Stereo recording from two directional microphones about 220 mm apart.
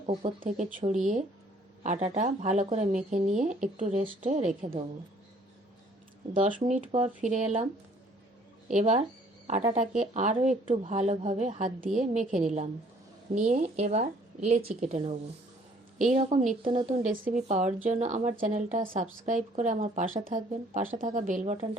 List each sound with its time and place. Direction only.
0.0 s speech: 30° right (ahead or behind)
6.3 s speech: 35° right (ahead or behind)